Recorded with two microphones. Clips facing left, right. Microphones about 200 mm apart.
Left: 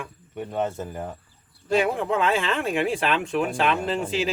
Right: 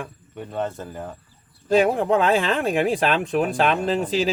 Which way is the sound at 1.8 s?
35° right (ahead or behind).